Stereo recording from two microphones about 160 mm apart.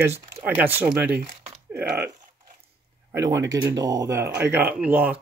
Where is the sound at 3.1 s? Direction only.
20° right (ahead or behind).